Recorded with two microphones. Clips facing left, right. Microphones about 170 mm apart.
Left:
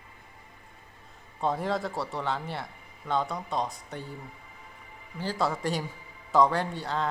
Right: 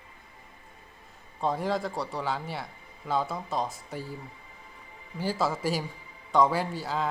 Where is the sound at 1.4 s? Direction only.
Centre (ahead or behind).